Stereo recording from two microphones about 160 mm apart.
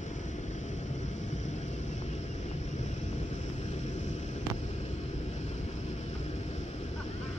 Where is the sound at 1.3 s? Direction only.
45° left (ahead or behind).